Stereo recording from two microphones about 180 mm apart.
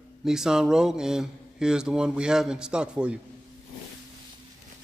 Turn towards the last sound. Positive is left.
turn(degrees=-5)  # may be behind; listen again after turning